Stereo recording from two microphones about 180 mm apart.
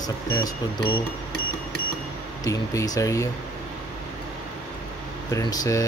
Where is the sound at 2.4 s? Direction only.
20° left (ahead or behind).